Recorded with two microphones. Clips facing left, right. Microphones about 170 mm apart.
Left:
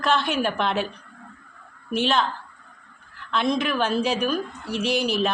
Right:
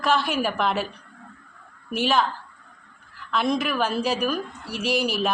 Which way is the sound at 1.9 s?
5° right (ahead or behind).